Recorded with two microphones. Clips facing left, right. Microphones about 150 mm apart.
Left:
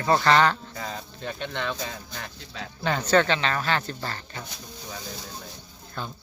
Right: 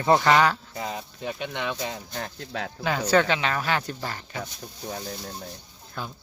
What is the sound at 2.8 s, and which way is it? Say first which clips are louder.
Speech: even; 10° right (ahead or behind).